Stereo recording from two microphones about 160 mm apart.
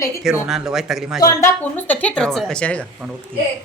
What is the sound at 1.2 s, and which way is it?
Speech, 20° left (ahead or behind).